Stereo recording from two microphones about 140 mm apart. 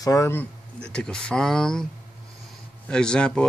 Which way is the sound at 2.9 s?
5° left (ahead or behind).